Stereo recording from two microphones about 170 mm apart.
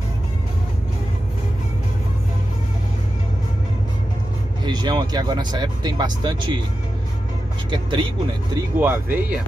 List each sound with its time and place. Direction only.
4.6 s speech: 25° right (ahead or behind)
7.7 s speech: 25° right (ahead or behind)
8.7 s speech: 10° right (ahead or behind)